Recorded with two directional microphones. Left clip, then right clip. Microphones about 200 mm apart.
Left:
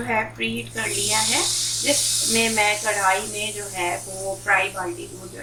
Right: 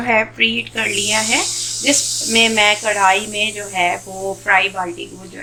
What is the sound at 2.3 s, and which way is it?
Speech, 45° right (ahead or behind).